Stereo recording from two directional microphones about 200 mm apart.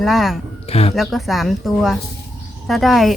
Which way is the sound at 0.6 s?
30° left (ahead or behind).